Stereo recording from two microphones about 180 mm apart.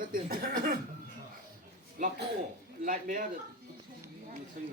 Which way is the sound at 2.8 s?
50° right (ahead or behind).